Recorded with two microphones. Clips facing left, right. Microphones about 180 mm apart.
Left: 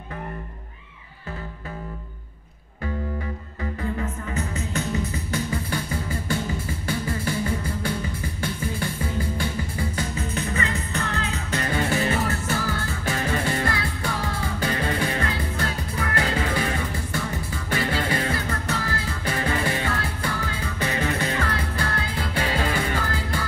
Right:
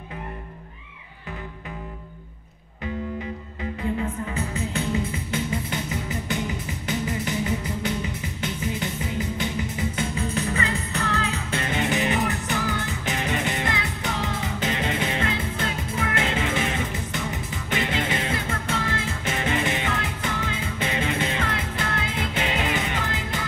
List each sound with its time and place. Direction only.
5.0 s music: 25° right (ahead or behind)
10.3 s music: 35° left (ahead or behind)
11.3 s music: 25° right (ahead or behind)